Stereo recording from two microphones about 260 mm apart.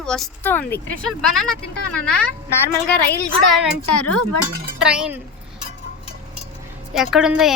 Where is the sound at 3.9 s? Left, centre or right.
Left.